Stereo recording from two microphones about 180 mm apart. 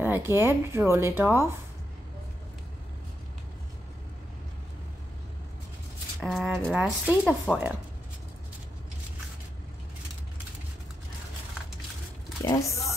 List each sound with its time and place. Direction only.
0.0 s speech: 15° right (ahead or behind)
6.2 s speech: centre (ahead or behind)
12.4 s speech: 15° left (ahead or behind)